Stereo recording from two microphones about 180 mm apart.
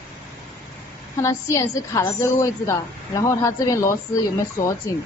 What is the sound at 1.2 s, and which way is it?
A woman's voice, 15° left (ahead or behind).